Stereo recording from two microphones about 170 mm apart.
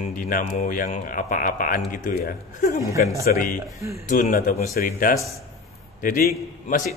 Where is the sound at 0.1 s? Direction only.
50° left (ahead or behind).